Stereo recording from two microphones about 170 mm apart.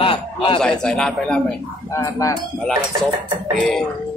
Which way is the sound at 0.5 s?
5° left (ahead or behind).